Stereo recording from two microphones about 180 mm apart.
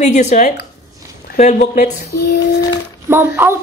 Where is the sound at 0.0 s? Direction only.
40° left (ahead or behind).